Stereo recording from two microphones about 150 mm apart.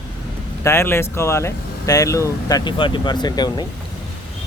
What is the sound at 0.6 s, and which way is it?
Speech, 15° left (ahead or behind).